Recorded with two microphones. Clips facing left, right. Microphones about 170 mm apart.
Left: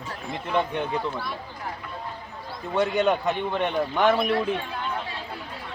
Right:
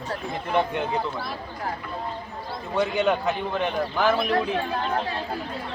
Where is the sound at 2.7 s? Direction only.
Centre (ahead or behind).